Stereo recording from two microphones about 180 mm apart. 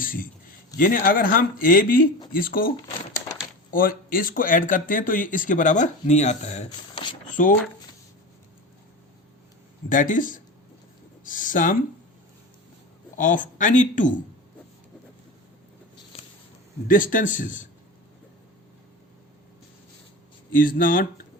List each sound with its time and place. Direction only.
0.0 s a sound: 50° left (ahead or behind)
0.8 s speech: 50° left (ahead or behind)
6.9 s a sound: 25° left (ahead or behind)
7.4 s speech: 45° left (ahead or behind)
9.9 s speech: 45° left (ahead or behind)
13.1 s speech: 45° left (ahead or behind)
16.1 s a sound: 35° left (ahead or behind)
16.9 s speech: 50° left (ahead or behind)
20.5 s speech: 50° left (ahead or behind)